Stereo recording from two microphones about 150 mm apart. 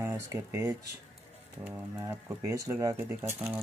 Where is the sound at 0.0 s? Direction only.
15° right (ahead or behind).